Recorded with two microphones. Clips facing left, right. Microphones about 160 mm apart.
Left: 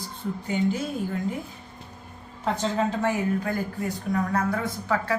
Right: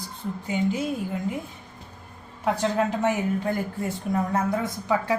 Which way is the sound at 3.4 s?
25° right (ahead or behind).